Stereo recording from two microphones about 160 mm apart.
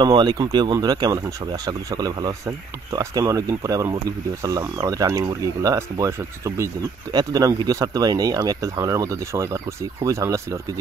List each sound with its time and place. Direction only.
0.0 s speech: 25° right (ahead or behind)